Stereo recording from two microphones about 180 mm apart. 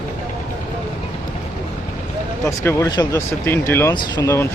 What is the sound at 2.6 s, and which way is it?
Speech, 20° left (ahead or behind).